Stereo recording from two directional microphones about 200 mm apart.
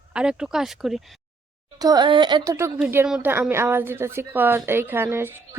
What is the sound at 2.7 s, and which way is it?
A woman's voice, 5° right (ahead or behind).